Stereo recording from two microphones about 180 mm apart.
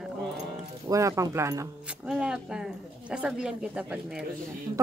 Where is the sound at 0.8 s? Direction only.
15° right (ahead or behind).